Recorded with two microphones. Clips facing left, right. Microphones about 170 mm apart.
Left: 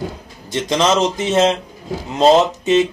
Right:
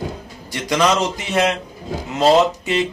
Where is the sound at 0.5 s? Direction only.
20° left (ahead or behind).